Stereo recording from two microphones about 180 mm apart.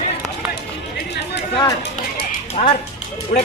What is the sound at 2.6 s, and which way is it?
Speech, 35° left (ahead or behind).